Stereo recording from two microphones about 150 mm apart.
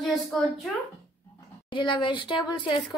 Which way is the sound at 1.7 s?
30° left (ahead or behind).